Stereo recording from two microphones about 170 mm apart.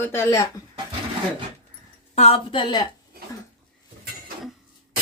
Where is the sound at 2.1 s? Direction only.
35° left (ahead or behind).